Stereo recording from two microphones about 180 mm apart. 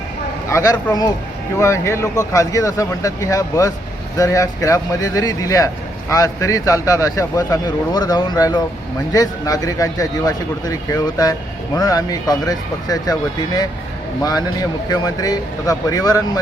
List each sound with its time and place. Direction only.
0.4 s a man's voice: 15° left (ahead or behind)